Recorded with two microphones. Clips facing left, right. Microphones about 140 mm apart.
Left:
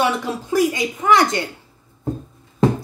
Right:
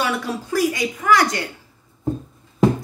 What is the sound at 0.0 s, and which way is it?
A woman's voice, 20° left (ahead or behind).